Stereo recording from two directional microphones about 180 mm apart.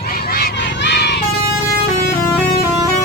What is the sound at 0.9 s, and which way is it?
Vehicle, 70° left (ahead or behind).